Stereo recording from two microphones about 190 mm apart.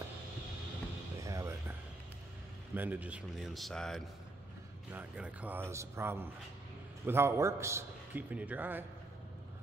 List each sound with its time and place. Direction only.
1.2 s music: 15° right (ahead or behind)
2.7 s a man's voice: 10° right (ahead or behind)